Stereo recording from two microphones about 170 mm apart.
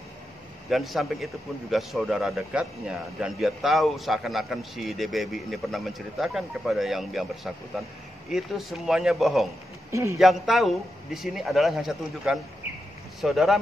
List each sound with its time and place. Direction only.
0.7 s a man's voice: centre (ahead or behind)
9.8 s a man's voice: 15° right (ahead or behind)
10.1 s a man's voice: centre (ahead or behind)